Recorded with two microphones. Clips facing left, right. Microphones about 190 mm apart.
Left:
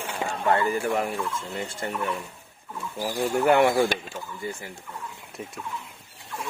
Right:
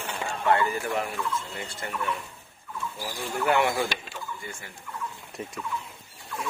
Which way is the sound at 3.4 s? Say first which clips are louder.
Left 4 dB; 50° left (ahead or behind).